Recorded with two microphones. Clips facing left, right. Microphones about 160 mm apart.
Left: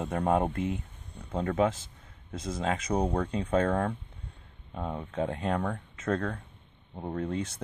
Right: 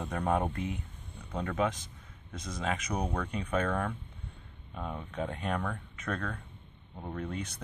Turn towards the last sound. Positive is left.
turn(degrees=30)  # may be behind; listen again after turning